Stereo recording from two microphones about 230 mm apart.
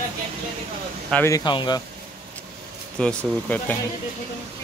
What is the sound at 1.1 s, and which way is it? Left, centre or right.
Speech, centre.